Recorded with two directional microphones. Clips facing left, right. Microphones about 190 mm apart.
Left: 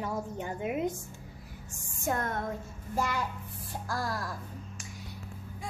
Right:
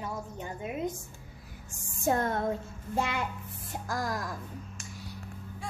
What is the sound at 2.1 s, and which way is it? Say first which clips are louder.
Speech: right 4 dB; 30° right (ahead or behind).